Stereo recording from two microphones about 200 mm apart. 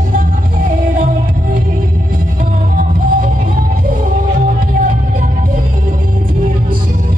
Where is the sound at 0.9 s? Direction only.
45° right (ahead or behind).